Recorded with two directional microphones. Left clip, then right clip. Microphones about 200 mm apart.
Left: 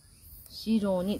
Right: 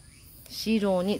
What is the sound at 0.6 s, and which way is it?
Speech, 35° right (ahead or behind).